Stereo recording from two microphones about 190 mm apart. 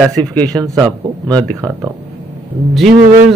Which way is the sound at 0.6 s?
20° right (ahead or behind).